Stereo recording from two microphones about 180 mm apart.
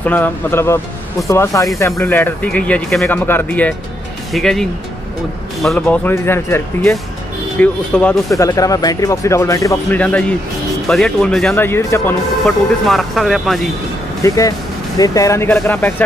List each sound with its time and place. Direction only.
0.0 s speech: 10° left (ahead or behind)
8.3 s speech: 20° left (ahead or behind)
12.8 s speech: centre (ahead or behind)
14.2 s speech: 20° left (ahead or behind)